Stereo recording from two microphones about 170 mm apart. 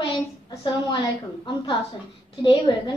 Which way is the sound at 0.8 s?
30° left (ahead or behind).